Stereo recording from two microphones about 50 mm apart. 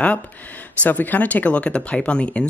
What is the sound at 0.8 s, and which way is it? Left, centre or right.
Speech, left.